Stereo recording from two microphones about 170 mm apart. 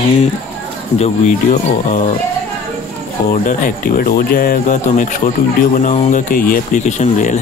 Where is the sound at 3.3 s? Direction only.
50° left (ahead or behind).